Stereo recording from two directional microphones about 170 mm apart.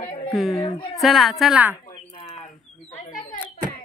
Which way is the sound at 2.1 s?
30° left (ahead or behind).